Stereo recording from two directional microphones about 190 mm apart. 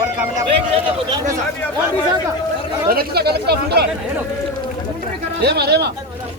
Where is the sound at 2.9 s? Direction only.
55° right (ahead or behind).